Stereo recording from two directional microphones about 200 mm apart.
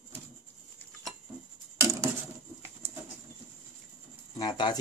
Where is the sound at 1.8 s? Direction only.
15° right (ahead or behind).